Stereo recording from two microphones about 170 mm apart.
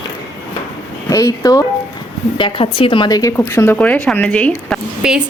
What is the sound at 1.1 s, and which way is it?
Speech, 20° left (ahead or behind).